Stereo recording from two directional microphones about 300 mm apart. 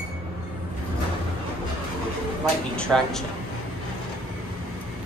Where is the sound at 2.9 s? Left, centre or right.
Centre.